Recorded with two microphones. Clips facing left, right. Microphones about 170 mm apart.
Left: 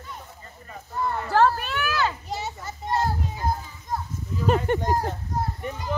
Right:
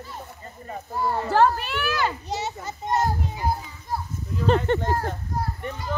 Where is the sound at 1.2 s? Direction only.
15° right (ahead or behind).